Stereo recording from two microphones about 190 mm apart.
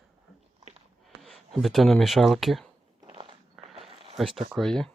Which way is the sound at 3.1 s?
25° right (ahead or behind).